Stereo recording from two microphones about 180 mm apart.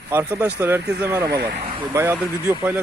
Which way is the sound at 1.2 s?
60° right (ahead or behind).